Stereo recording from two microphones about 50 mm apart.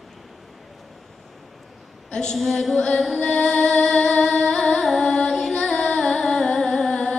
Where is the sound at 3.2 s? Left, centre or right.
Centre.